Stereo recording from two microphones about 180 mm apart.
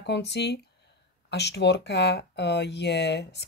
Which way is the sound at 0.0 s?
70° left (ahead or behind).